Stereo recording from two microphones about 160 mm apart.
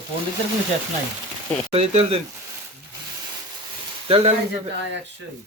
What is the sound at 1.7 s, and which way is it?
Speech, 40° right (ahead or behind).